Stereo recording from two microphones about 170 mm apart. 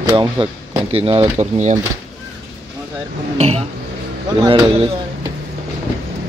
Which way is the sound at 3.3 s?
35° right (ahead or behind).